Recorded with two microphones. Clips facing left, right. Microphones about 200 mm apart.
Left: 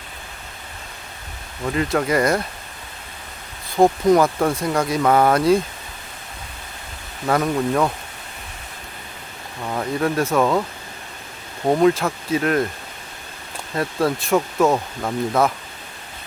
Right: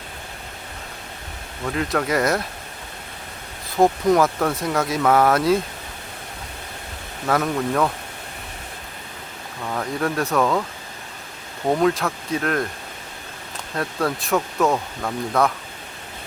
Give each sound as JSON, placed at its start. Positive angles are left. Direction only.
{"t": 1.6, "sound": "speech", "side_deg": 0}
{"t": 3.8, "sound": "speech", "side_deg": 0}
{"t": 7.3, "sound": "speech", "side_deg": 0}
{"t": 9.6, "sound": "speech", "side_deg": 5}
{"t": 11.6, "sound": "speech", "side_deg": 5}
{"t": 13.7, "sound": "speech", "side_deg": 0}
{"t": 14.7, "sound": "speech", "side_deg": 15}